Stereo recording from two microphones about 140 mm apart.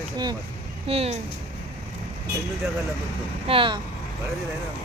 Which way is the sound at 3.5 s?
35° right (ahead or behind).